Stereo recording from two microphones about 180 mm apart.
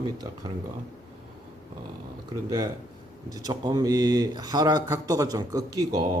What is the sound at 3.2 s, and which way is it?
Speech, 20° right (ahead or behind).